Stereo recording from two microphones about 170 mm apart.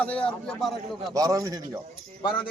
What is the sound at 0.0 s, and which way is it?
Speech, 5° left (ahead or behind).